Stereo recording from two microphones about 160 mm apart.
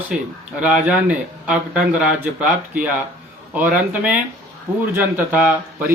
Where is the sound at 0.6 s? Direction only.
5° right (ahead or behind).